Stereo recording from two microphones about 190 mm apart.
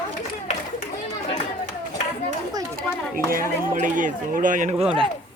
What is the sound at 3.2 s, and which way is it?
Speech, 45° right (ahead or behind).